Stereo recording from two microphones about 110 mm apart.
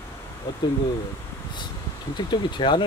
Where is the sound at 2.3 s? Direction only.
45° left (ahead or behind).